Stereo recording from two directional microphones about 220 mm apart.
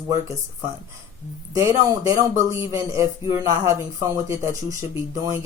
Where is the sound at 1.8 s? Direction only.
15° right (ahead or behind).